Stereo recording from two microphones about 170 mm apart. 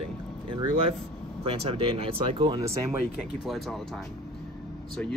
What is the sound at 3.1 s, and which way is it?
Speech, centre (ahead or behind).